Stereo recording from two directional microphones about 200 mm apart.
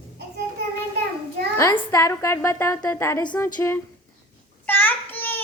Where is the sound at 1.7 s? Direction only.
15° left (ahead or behind).